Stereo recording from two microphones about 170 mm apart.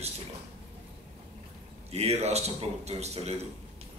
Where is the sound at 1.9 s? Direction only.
40° right (ahead or behind).